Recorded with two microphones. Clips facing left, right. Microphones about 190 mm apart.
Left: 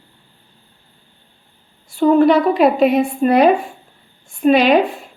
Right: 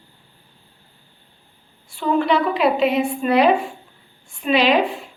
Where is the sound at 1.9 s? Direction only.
45° left (ahead or behind).